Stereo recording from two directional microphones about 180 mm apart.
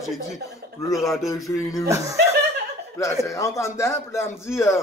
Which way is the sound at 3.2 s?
15° left (ahead or behind).